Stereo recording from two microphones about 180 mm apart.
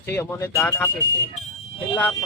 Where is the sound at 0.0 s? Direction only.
10° left (ahead or behind).